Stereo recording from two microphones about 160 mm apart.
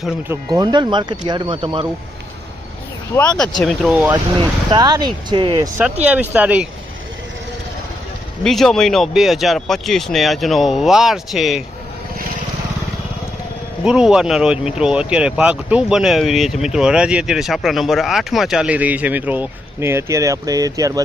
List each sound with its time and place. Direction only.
0.5 s speech: 30° right (ahead or behind)
3.2 s speech: 5° left (ahead or behind)
4.1 s speech: 30° right (ahead or behind)
5.7 s speech: 10° right (ahead or behind)
8.4 s speech: centre (ahead or behind)
13.8 s speech: 5° right (ahead or behind); by 21.0 s 20° right (ahead or behind)